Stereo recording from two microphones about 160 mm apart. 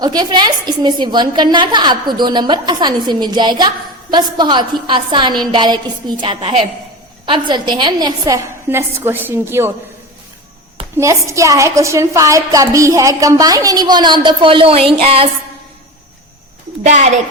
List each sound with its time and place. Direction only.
0.0 s a woman's voice: 25° right (ahead or behind)
10.9 s a woman's voice: 20° right (ahead or behind); by 14.8 s 35° right (ahead or behind)
14.9 s music: 35° right (ahead or behind)
16.8 s speech: 45° right (ahead or behind)